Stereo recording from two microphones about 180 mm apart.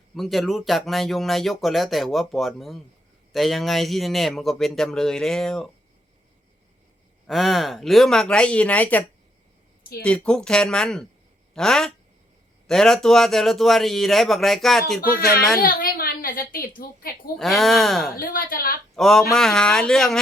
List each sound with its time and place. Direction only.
0.2 s speech: centre (ahead or behind)
7.3 s speech: centre (ahead or behind)
15.0 s a woman's voice: 55° left (ahead or behind)
17.3 s speech: centre (ahead or behind)
18.2 s a woman's voice: 50° left (ahead or behind)
18.9 s speech: centre (ahead or behind)